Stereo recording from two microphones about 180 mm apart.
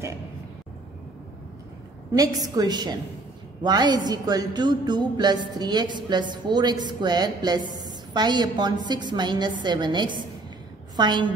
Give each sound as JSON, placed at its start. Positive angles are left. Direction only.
{"t": 2.1, "sound": "speech", "side_deg": -20}